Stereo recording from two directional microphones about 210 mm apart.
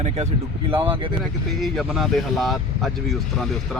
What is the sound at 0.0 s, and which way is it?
Speech, 30° right (ahead or behind).